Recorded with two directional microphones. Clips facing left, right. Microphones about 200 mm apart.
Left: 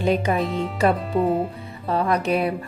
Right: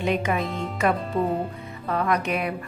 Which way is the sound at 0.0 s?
35° left (ahead or behind).